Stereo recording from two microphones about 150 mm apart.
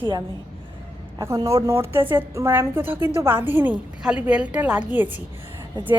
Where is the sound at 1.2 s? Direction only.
20° right (ahead or behind).